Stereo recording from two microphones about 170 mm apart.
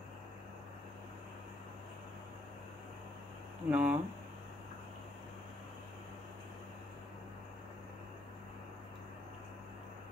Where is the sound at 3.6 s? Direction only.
10° right (ahead or behind).